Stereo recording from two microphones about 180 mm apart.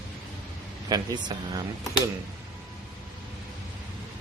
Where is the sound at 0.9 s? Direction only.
25° right (ahead or behind).